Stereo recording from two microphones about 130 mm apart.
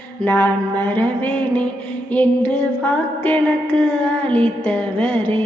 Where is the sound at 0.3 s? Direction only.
15° left (ahead or behind).